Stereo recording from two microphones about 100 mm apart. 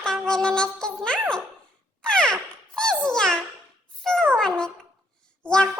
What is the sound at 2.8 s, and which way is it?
Music, 5° left (ahead or behind).